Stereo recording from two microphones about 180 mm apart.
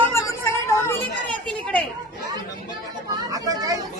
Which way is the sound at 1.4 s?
5° left (ahead or behind).